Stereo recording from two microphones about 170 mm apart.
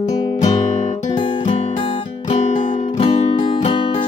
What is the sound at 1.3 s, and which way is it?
Music, 40° left (ahead or behind).